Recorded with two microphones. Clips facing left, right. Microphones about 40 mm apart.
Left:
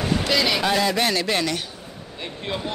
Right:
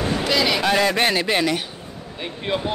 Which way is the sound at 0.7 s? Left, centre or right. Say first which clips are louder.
Right 3 dB; right.